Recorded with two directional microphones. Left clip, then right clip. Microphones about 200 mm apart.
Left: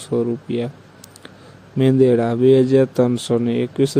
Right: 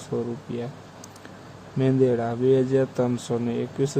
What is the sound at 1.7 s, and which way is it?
Speech, 30° left (ahead or behind).